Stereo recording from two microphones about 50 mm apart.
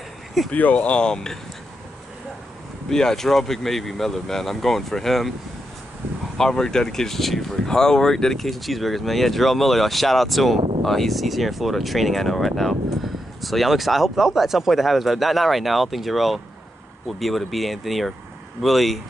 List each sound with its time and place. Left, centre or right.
0.5 s speech: left; by 1.4 s centre
2.9 s speech: centre
6.3 s speech: centre